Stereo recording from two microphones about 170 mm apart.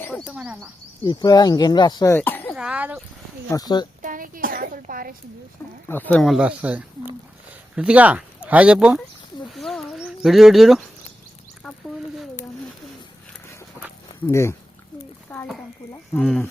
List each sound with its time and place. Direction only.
0.1 s speech: 5° right (ahead or behind)
1.0 s speech: 25° left (ahead or behind)
2.1 s cough: 10° left (ahead or behind)
2.6 s speech: 5° right (ahead or behind)
3.5 s speech: 25° left (ahead or behind)
4.0 s a woman's voice: 55° right (ahead or behind)
5.9 s speech: 10° left (ahead or behind); by 9.0 s 5° right (ahead or behind)
9.6 s a sound: centre (ahead or behind)
14.3 s speech: 15° left (ahead or behind)
15.3 s a sound: 10° left (ahead or behind)